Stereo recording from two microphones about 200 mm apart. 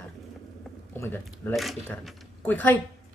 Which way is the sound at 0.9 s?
10° left (ahead or behind).